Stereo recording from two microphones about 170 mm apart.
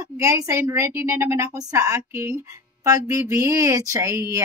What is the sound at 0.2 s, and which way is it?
Speech, 15° right (ahead or behind).